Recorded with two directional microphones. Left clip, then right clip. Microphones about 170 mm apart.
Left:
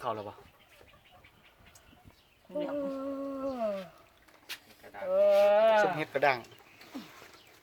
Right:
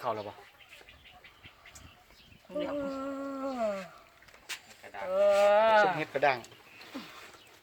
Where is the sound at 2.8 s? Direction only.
10° left (ahead or behind).